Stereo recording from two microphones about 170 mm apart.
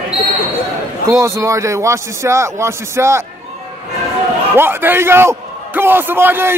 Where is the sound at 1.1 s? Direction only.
15° right (ahead or behind).